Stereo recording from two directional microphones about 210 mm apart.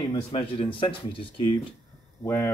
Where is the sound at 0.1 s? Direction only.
25° left (ahead or behind).